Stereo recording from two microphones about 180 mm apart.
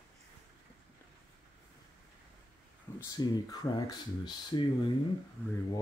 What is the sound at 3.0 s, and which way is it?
Speech, 20° left (ahead or behind).